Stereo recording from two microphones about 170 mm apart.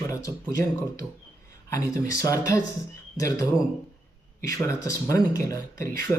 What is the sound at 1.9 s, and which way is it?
Speech, 20° left (ahead or behind).